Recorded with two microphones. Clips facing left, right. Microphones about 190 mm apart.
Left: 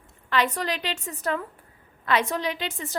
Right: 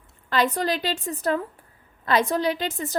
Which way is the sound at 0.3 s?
35° right (ahead or behind).